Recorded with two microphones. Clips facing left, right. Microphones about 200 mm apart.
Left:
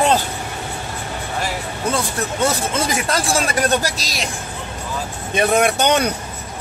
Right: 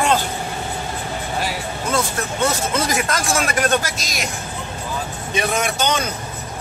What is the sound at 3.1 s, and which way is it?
Speech, 35° left (ahead or behind).